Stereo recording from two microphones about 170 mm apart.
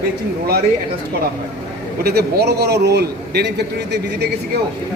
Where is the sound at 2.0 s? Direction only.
70° right (ahead or behind).